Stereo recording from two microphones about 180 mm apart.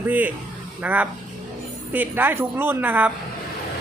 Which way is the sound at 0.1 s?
10° right (ahead or behind).